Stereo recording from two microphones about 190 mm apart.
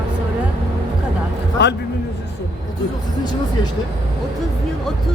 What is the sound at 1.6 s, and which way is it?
Speech, 65° left (ahead or behind).